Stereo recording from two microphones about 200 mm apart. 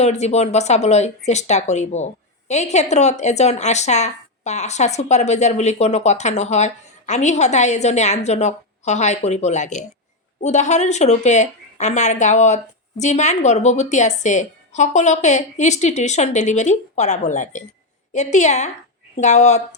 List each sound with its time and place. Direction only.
0.0 s speech: 35° left (ahead or behind)